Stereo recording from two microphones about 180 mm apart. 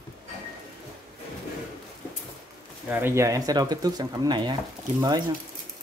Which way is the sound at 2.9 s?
10° right (ahead or behind).